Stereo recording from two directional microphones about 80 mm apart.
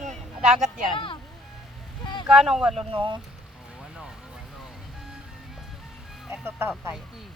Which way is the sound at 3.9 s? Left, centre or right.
Centre.